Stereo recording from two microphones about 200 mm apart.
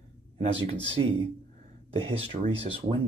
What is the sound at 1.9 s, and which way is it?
Speech, 30° right (ahead or behind).